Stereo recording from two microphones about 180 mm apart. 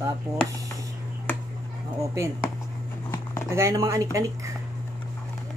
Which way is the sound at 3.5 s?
20° right (ahead or behind).